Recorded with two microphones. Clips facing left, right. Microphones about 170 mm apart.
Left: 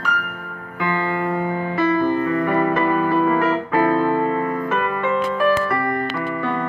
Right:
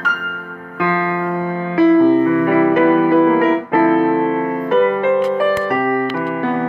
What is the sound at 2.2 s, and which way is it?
Music, 60° right (ahead or behind).